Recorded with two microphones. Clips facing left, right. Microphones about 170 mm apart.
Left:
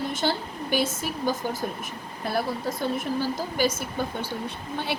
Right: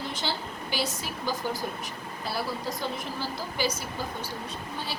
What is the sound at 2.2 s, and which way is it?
A woman's voice, 55° left (ahead or behind).